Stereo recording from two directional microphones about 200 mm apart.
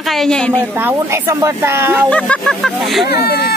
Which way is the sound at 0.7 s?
10° right (ahead or behind).